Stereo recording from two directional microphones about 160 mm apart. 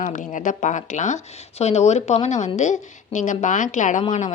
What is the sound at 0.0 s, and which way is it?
A woman's voice, 50° left (ahead or behind).